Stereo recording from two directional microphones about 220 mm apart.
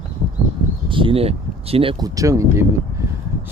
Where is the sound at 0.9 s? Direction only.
25° right (ahead or behind).